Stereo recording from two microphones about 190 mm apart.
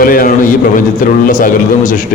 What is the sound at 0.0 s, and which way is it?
A man's voice, 45° left (ahead or behind).